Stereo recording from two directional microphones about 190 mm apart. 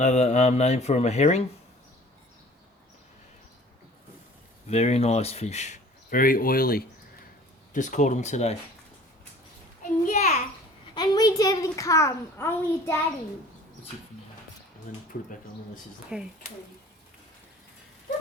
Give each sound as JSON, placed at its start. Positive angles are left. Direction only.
{"t": 0.0, "sound": "speech", "side_deg": 35}
{"t": 4.7, "sound": "speech", "side_deg": 35}
{"t": 10.1, "sound": "a sound", "side_deg": 35}
{"t": 10.9, "sound": "a child's voice", "side_deg": 20}
{"t": 16.0, "sound": "speech", "side_deg": -5}